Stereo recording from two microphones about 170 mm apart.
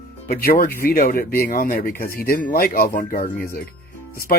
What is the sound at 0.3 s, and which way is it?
Speech, 60° left (ahead or behind).